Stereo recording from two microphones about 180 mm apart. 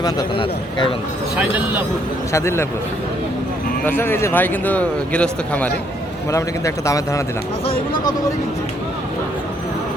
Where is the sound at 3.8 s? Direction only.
10° left (ahead or behind).